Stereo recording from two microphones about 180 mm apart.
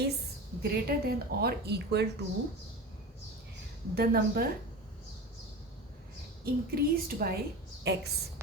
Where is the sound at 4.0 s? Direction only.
60° right (ahead or behind).